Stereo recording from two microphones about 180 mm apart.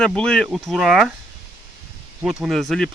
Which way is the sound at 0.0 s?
5° left (ahead or behind).